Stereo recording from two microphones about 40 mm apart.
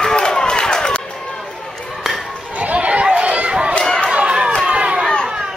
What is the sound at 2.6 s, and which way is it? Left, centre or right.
Chatter, right.